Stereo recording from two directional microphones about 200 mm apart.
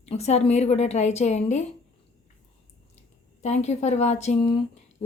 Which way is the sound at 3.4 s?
35° left (ahead or behind).